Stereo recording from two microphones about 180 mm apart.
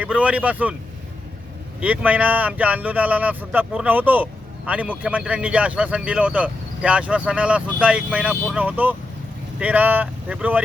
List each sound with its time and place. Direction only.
0.0 s a man's voice: 5° right (ahead or behind)
1.8 s a man's voice: 10° right (ahead or behind)